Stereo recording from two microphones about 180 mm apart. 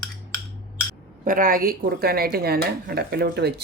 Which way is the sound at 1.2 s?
50° right (ahead or behind).